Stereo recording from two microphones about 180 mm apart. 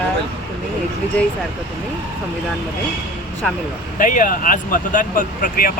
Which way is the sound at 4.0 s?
45° left (ahead or behind).